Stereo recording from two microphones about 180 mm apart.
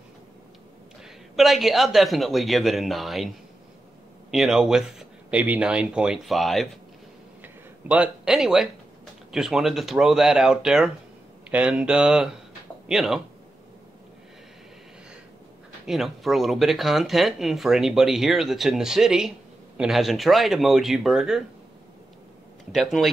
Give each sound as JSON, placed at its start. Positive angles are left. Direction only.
{"t": 1.3, "sound": "speech", "side_deg": 0}
{"t": 7.4, "sound": "a sound", "side_deg": -5}
{"t": 9.3, "sound": "speech", "side_deg": 0}
{"t": 15.9, "sound": "speech", "side_deg": 0}
{"t": 22.7, "sound": "speech", "side_deg": 0}